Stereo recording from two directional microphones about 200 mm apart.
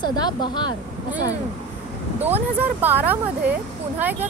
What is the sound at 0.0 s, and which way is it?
Speech, 20° left (ahead or behind).